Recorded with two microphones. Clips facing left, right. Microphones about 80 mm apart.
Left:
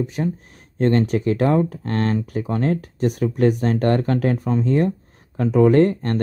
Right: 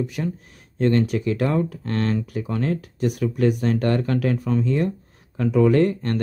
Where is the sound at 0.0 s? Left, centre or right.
Left.